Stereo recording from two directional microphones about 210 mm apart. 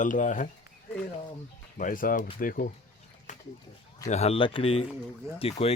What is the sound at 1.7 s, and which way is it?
Speech, 40° left (ahead or behind).